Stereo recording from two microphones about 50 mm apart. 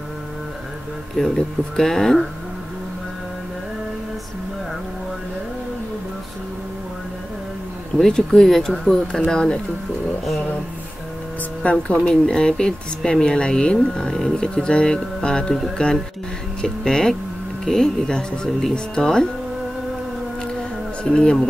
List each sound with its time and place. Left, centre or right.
1.1 s speech: centre
8.2 s speech: centre
11.6 s speech: left
12.1 s speech: centre
21.0 s speech: centre